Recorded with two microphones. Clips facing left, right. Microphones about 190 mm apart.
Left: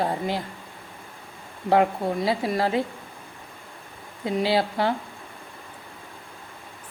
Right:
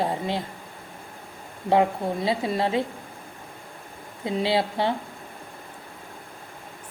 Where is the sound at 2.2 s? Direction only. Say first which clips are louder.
Even; 25° right (ahead or behind).